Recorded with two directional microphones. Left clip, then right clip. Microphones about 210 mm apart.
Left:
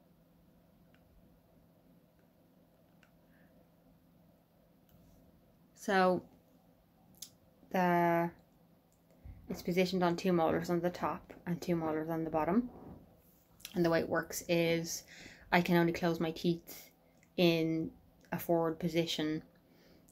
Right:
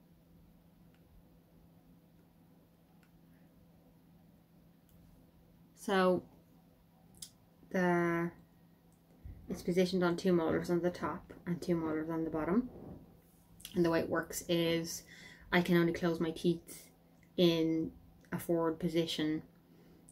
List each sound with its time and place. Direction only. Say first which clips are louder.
5.8 s a woman's voice: left 1 dB; 10° right (ahead or behind)
7.2 s a sound: left 1 dB; 5° right (ahead or behind)
7.7 s speech: left 3 dB; 5° right (ahead or behind)
9.5 s speech: even; 5° right (ahead or behind)